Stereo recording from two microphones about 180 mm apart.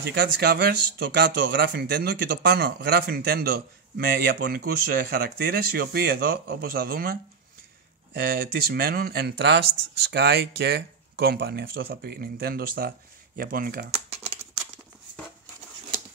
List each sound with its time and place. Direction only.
0.0 s speech: 70° right (ahead or behind); by 13.8 s 55° right (ahead or behind)